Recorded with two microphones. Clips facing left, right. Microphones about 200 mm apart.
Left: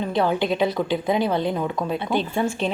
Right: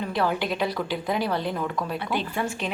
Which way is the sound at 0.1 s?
25° left (ahead or behind).